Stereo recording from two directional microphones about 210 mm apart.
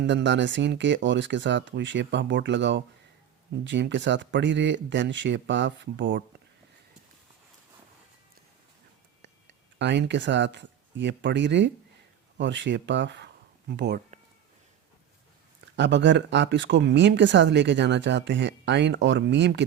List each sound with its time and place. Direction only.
0.0 s speech: 60° right (ahead or behind)
9.7 s speech: 55° right (ahead or behind)
15.7 s speech: 55° right (ahead or behind)